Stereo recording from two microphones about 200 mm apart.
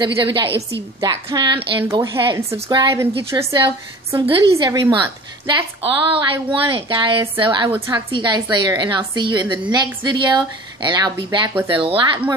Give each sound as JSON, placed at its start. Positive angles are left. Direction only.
{"t": 0.0, "sound": "a woman's voice", "side_deg": -25}